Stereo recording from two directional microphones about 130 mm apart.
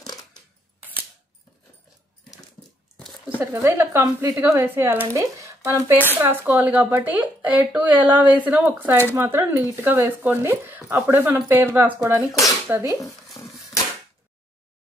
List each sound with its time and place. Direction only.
3.3 s speech: 15° right (ahead or behind)